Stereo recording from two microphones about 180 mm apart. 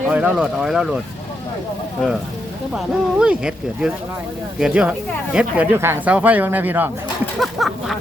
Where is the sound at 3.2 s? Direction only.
5° right (ahead or behind).